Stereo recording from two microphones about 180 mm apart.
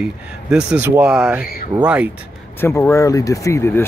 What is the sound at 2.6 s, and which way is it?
Speech, 15° left (ahead or behind).